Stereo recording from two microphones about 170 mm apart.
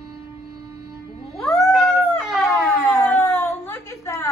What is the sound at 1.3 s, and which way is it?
Cat, centre (ahead or behind).